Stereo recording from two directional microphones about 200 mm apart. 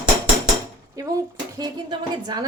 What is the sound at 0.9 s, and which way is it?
Speech, 15° right (ahead or behind).